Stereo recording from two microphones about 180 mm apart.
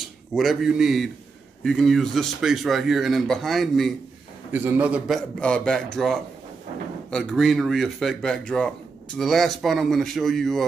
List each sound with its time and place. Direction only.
0.0 s a man's voice: centre (ahead or behind)
4.5 s a man's voice: 10° right (ahead or behind)